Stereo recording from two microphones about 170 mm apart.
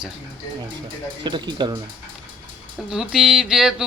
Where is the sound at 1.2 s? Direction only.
25° right (ahead or behind).